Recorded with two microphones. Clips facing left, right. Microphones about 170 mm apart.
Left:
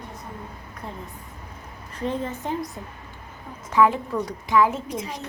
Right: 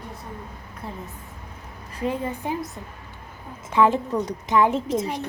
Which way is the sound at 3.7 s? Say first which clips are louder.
Even; 20° right (ahead or behind).